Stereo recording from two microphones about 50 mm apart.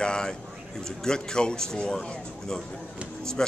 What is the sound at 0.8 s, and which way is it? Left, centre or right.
A man's voice, centre.